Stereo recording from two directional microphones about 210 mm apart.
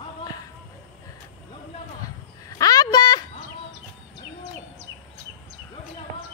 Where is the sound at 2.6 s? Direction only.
20° left (ahead or behind).